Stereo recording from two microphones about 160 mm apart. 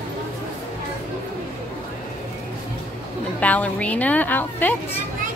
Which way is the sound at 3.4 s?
10° left (ahead or behind).